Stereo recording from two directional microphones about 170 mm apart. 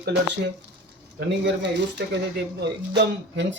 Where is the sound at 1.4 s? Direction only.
90° right.